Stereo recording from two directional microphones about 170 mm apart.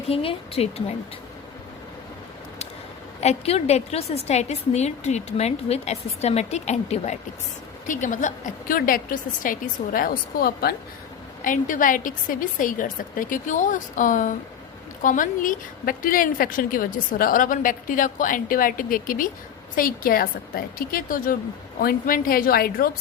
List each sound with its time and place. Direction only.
0.1 s a woman's voice: 35° left (ahead or behind)
3.2 s a woman's voice: 40° left (ahead or behind); by 10.8 s 65° left (ahead or behind)
11.4 s a woman's voice: 50° left (ahead or behind)